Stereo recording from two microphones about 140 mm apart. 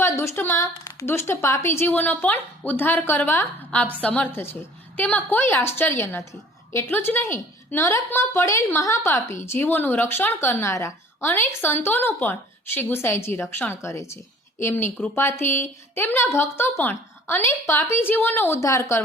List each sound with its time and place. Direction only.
0.0 s a woman's voice: 15° left (ahead or behind)